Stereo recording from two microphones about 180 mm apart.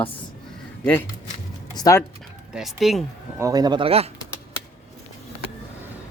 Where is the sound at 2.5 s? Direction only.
Centre (ahead or behind).